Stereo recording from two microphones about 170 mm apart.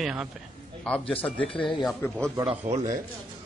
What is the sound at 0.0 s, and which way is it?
Speech, 5° right (ahead or behind).